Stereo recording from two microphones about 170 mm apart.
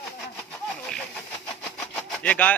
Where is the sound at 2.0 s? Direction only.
10° left (ahead or behind).